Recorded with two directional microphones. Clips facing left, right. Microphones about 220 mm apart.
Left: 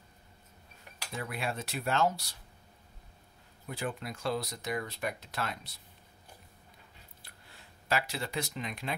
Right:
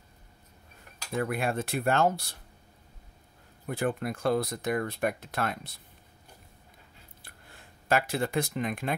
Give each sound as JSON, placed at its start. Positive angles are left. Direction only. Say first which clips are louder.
{"t": 1.1, "sound": "speech", "louder": "right 8 dB", "side_deg": -55}
{"t": 3.6, "sound": "speech", "louder": "right 7 dB", "side_deg": -55}
{"t": 7.2, "sound": "speech", "louder": "right 6 dB", "side_deg": -50}